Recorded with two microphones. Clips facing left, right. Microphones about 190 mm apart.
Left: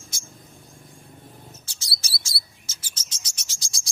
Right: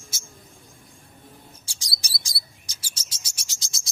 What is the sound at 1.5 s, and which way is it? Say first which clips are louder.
Bird: left 1 dB; 15° right (ahead or behind).